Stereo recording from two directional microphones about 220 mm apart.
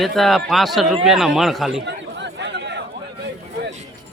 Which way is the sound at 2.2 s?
50° right (ahead or behind).